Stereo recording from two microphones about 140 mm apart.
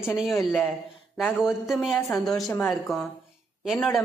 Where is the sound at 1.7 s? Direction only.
Centre (ahead or behind).